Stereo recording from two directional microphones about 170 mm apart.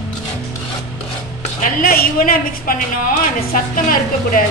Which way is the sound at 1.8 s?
60° left (ahead or behind).